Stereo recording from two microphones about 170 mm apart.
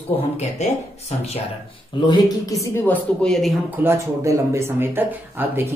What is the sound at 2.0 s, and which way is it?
Speech, 25° left (ahead or behind).